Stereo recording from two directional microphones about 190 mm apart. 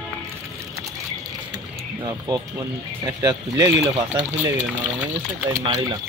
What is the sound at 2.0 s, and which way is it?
Speech, 20° right (ahead or behind).